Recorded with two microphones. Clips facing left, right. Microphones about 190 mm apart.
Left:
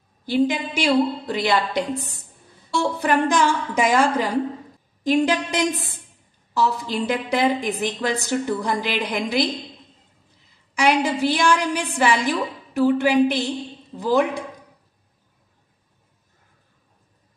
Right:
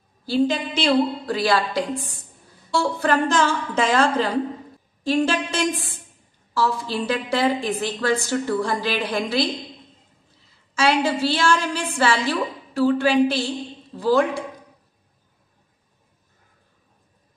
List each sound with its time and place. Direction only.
0.2 s a woman's voice: 15° left (ahead or behind)
10.7 s a woman's voice: 15° left (ahead or behind)